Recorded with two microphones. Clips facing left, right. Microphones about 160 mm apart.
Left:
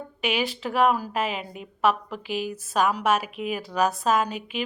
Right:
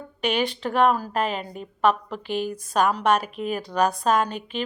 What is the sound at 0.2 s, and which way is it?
A woman's voice, 5° left (ahead or behind).